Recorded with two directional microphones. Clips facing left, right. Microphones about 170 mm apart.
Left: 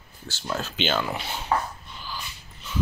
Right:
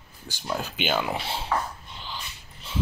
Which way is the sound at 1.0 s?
25° right (ahead or behind).